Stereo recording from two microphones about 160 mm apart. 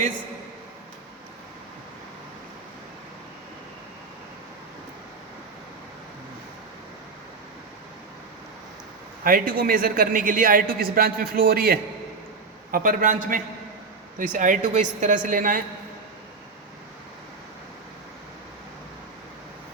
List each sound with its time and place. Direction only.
9.2 s a woman's voice: 65° right (ahead or behind)